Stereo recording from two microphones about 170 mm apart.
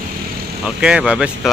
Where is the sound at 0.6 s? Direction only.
5° right (ahead or behind).